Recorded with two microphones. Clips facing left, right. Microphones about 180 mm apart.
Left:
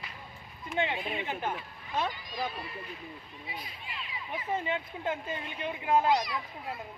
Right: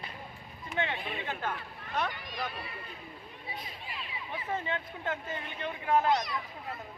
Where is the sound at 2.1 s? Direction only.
65° right (ahead or behind).